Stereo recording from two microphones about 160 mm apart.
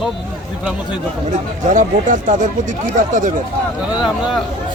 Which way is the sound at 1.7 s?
50° right (ahead or behind).